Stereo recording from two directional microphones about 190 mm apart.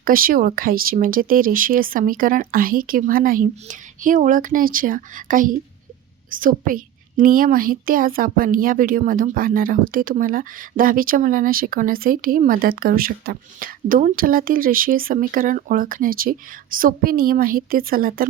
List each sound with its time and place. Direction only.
0.0 s a woman's voice: 50° right (ahead or behind)